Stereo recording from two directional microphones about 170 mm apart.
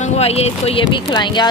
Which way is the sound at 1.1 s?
25° left (ahead or behind).